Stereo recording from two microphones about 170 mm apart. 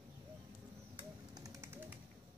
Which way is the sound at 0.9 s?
20° right (ahead or behind).